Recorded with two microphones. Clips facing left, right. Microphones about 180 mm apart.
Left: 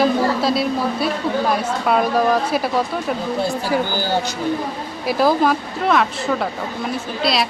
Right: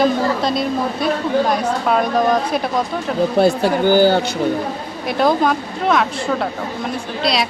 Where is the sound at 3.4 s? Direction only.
60° right (ahead or behind).